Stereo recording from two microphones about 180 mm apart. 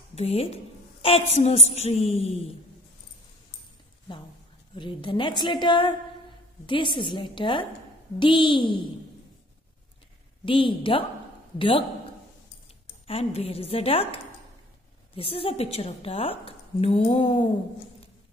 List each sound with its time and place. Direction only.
0.1 s a woman's voice: 35° left (ahead or behind)
4.7 s a woman's voice: 25° left (ahead or behind)
10.4 s a woman's voice: 30° left (ahead or behind)
13.0 s a woman's voice: 30° left (ahead or behind)